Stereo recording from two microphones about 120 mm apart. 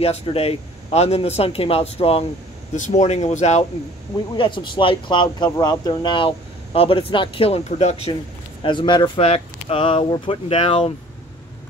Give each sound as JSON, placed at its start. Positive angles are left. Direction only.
{"t": 0.0, "sound": "speech", "side_deg": 55}
{"t": 2.7, "sound": "speech", "side_deg": 80}
{"t": 4.4, "sound": "speech", "side_deg": 45}
{"t": 8.6, "sound": "speech", "side_deg": 40}